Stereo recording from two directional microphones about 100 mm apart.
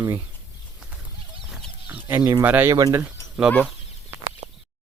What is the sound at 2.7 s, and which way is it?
Speech, 35° right (ahead or behind).